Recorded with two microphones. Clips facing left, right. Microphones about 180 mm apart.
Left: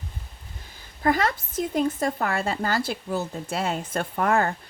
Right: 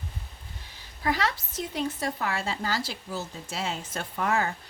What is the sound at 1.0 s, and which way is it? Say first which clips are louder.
Speech: left 5 dB; 50° left (ahead or behind).